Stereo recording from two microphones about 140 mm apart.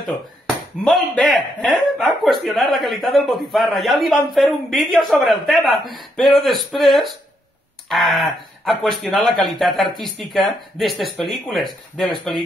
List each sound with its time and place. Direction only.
0.8 s speech: centre (ahead or behind)